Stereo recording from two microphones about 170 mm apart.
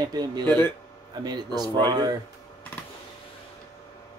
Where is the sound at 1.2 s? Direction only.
25° right (ahead or behind).